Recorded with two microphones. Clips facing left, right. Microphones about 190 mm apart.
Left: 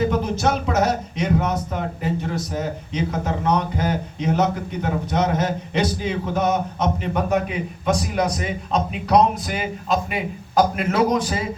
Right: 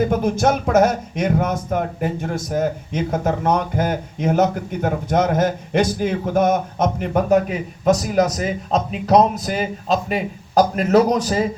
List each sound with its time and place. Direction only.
0.0 s speech: 50° right (ahead or behind)